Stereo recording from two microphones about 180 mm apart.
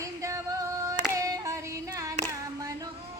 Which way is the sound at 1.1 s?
15° right (ahead or behind).